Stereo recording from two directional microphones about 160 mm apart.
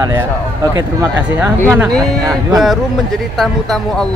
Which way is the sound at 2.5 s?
Centre (ahead or behind).